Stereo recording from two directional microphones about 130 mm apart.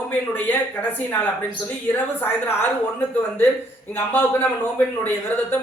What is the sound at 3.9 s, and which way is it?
A man's voice, 15° left (ahead or behind).